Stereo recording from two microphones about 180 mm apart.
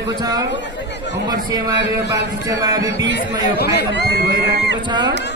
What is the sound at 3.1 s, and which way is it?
Speech, 65° left (ahead or behind).